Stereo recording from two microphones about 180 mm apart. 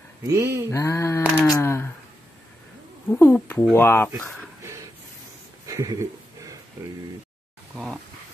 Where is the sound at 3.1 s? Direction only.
10° left (ahead or behind).